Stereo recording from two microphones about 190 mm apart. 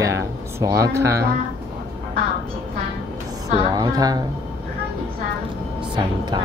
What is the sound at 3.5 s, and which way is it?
Speech, 25° right (ahead or behind).